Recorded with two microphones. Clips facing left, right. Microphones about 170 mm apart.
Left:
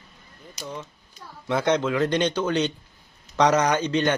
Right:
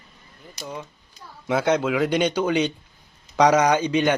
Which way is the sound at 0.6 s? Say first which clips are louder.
Right 1 dB; 10° right (ahead or behind).